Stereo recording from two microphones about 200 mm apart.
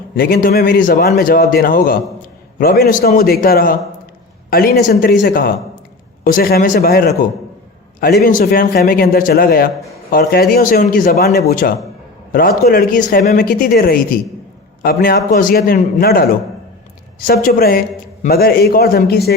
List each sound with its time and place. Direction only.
0.2 s a man's voice: 50° left (ahead or behind)
17.2 s a man's voice: 45° left (ahead or behind)